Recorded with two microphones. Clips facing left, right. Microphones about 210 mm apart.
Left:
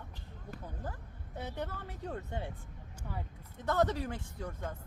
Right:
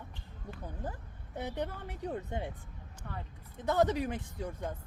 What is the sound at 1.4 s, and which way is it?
Speech, 20° right (ahead or behind).